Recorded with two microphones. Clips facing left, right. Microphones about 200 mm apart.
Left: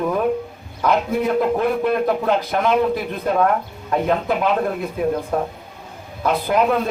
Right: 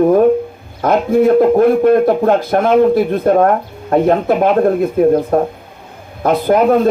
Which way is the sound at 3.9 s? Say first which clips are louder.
Right 8 dB; 50° right (ahead or behind).